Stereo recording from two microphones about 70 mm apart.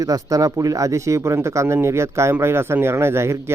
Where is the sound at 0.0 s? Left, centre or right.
Right.